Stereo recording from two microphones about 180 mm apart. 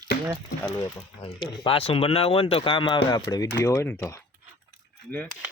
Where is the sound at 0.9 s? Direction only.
30° left (ahead or behind).